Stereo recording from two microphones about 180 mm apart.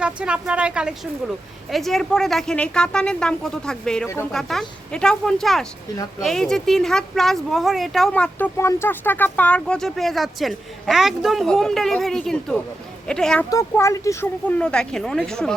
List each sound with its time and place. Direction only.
0.0 s speech: 5° right (ahead or behind)
13.5 s speech: 15° left (ahead or behind)
14.6 s speech: 5° left (ahead or behind)